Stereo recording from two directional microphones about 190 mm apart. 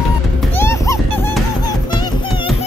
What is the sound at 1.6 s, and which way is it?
Music, 25° left (ahead or behind).